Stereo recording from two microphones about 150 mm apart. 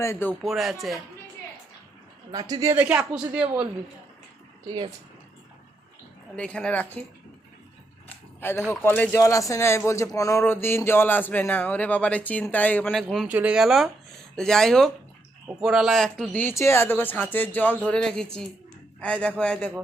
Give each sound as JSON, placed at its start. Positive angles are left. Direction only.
{"t": 0.0, "sound": "speech", "side_deg": 15}
{"t": 0.4, "sound": "speech", "side_deg": 0}
{"t": 2.3, "sound": "speech", "side_deg": -25}
{"t": 2.8, "sound": "speech", "side_deg": -10}
{"t": 6.3, "sound": "speech", "side_deg": 5}
{"t": 8.4, "sound": "speech", "side_deg": 15}
{"t": 13.2, "sound": "speech", "side_deg": -10}